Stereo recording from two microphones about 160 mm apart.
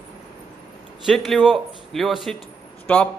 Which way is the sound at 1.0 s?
Centre (ahead or behind).